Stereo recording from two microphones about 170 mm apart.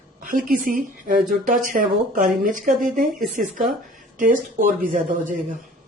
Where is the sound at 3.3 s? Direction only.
50° right (ahead or behind).